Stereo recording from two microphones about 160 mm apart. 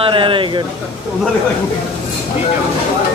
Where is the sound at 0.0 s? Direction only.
30° right (ahead or behind).